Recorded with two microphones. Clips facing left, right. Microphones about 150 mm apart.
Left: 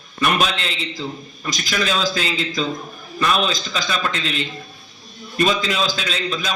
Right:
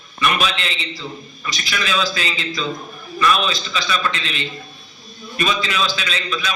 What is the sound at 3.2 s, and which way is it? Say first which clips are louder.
Speech: right 1 dB; 45° left (ahead or behind).